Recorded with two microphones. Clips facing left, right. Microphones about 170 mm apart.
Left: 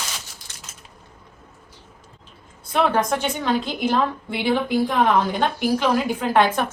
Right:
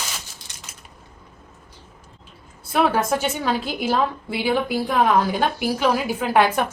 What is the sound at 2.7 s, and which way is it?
A woman's voice, 5° right (ahead or behind).